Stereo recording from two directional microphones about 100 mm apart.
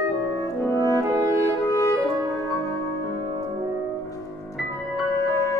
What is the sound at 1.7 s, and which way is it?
Music, 35° left (ahead or behind).